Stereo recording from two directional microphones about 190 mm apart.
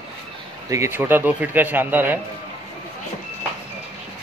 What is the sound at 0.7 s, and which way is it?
Speech, 15° right (ahead or behind).